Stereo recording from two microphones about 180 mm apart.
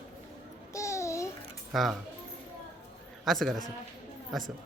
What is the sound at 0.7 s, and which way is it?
Babbling, 15° left (ahead or behind).